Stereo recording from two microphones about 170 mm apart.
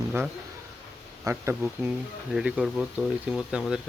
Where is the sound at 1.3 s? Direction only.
20° right (ahead or behind).